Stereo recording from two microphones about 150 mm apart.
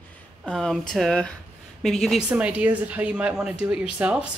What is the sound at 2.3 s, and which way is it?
Speech, 10° right (ahead or behind).